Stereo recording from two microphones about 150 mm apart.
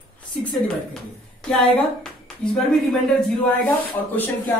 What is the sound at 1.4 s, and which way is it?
Speech, 5° left (ahead or behind).